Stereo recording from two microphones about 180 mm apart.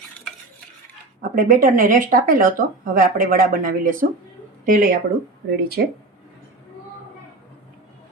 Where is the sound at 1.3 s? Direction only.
50° right (ahead or behind).